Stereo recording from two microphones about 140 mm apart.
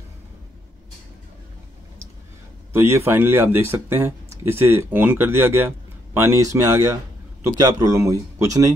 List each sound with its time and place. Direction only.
2.7 s speech: 20° right (ahead or behind)